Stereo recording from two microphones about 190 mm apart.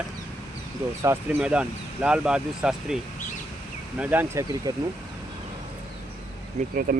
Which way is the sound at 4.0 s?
10° right (ahead or behind).